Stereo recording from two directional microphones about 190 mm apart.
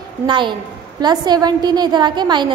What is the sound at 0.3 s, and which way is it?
A woman's voice, 25° right (ahead or behind).